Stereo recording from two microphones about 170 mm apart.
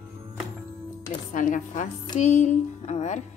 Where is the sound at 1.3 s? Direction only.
50° left (ahead or behind).